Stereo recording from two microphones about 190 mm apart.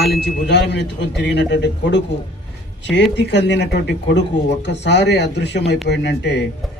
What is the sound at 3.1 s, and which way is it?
Speech, 65° left (ahead or behind).